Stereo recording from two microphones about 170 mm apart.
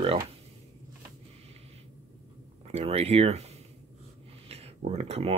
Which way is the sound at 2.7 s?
35° right (ahead or behind).